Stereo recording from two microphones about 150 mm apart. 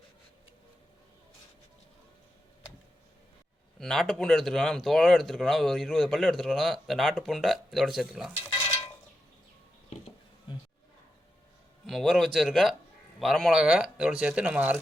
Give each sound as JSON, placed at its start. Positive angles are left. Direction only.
{"t": 3.8, "sound": "speech", "side_deg": 5}
{"t": 10.5, "sound": "a sound", "side_deg": 30}
{"t": 11.9, "sound": "speech", "side_deg": 0}